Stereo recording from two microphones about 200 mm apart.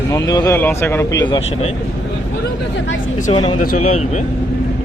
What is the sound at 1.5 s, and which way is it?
Speech, 30° left (ahead or behind).